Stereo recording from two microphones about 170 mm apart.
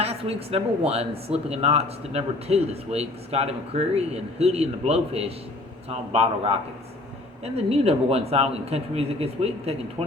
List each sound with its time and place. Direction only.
0.0 s speech: 35° right (ahead or behind)